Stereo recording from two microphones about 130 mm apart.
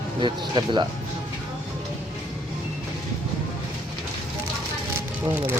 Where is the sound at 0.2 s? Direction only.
40° right (ahead or behind).